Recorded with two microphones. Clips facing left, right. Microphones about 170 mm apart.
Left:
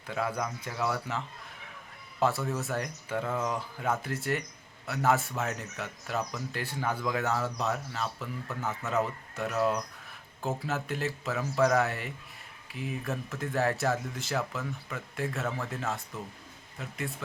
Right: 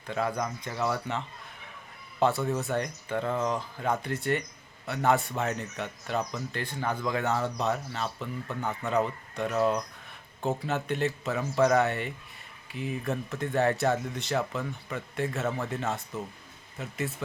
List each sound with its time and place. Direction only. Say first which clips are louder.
0.1 s speech: right 2 dB; 5° left (ahead or behind)
2.2 s speech: right 3 dB; centre (ahead or behind)